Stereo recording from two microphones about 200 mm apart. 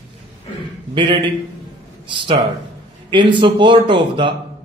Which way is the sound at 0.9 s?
25° right (ahead or behind).